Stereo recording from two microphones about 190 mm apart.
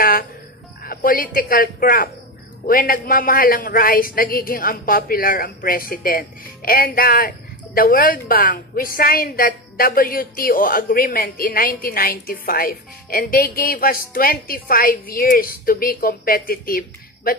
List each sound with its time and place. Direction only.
0.8 s a man's voice: 50° left (ahead or behind)